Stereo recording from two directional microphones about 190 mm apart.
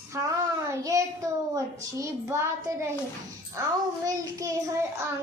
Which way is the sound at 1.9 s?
15° right (ahead or behind).